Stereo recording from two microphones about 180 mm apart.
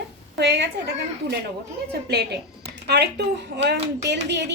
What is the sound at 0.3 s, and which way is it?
Speech, 70° right (ahead or behind).